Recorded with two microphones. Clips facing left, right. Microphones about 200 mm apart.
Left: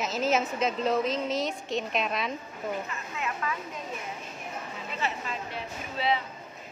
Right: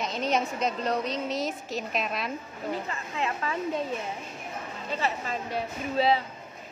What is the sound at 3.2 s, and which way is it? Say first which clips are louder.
Speech: right 3 dB; 30° right (ahead or behind).